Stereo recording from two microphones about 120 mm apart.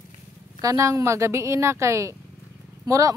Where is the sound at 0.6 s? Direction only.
25° right (ahead or behind).